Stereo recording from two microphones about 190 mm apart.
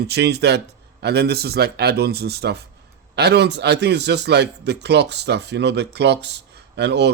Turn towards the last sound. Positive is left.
turn(degrees=-65)  # may be behind; listen again after turning